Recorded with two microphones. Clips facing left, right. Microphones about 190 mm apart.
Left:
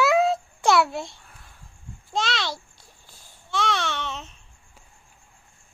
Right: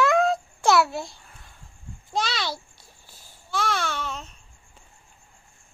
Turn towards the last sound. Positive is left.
turn(degrees=0)  # may be behind; listen again after turning